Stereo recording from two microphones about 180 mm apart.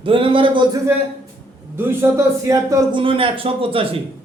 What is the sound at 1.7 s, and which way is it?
A man's voice, 10° right (ahead or behind).